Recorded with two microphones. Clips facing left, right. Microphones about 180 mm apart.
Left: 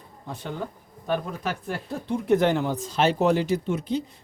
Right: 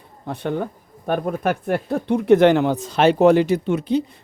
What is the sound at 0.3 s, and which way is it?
Speech, 60° right (ahead or behind).